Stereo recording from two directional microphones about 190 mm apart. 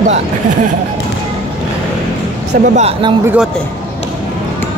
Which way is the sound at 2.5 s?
40° right (ahead or behind).